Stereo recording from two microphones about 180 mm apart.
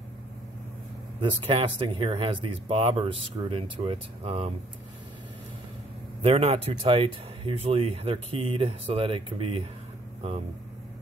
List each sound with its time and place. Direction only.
1.5 s speech: 30° right (ahead or behind)
6.2 s speech: 35° right (ahead or behind)